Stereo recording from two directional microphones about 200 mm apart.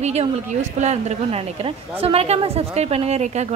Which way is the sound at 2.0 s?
30° right (ahead or behind).